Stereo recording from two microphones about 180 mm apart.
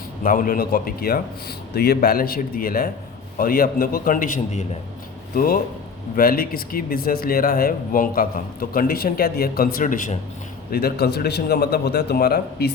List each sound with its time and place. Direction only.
0.2 s a man's voice: 50° left (ahead or behind)
10.7 s a man's voice: 60° left (ahead or behind)